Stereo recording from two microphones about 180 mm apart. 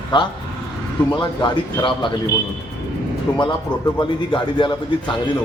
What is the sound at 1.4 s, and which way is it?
Speech, 25° left (ahead or behind).